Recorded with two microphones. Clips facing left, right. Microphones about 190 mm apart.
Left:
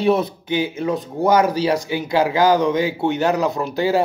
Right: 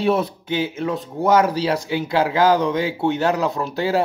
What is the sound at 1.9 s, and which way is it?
Speech, 10° left (ahead or behind).